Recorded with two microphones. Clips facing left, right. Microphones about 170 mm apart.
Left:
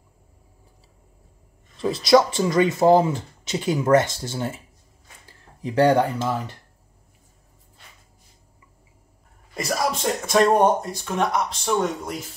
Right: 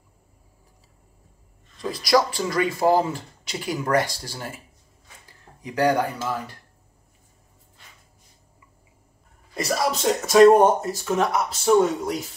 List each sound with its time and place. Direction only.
1.8 s speech: 25° left (ahead or behind)
5.6 s speech: 30° left (ahead or behind)
9.5 s speech: centre (ahead or behind)